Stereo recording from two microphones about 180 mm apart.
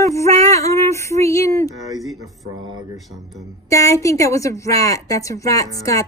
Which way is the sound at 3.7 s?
15° left (ahead or behind).